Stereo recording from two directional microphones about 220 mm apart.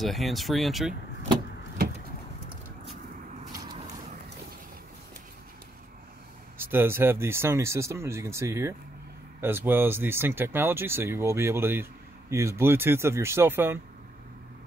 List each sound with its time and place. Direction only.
0.0 s speech: centre (ahead or behind)
3.5 s vehicle: 20° right (ahead or behind)
6.6 s speech: 10° right (ahead or behind)